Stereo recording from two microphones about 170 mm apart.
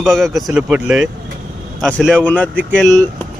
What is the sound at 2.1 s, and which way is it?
Speech, 10° left (ahead or behind).